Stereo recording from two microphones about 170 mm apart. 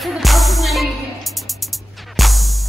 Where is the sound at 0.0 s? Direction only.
Centre (ahead or behind).